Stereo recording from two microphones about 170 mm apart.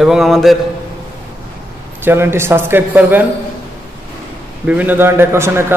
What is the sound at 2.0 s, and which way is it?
A man's voice, 15° right (ahead or behind).